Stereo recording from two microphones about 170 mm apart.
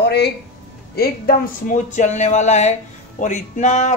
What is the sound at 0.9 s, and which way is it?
Speech, 60° left (ahead or behind).